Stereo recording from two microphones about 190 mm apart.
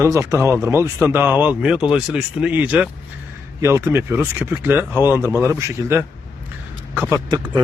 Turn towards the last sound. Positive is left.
turn(degrees=-15)  # may be behind; listen again after turning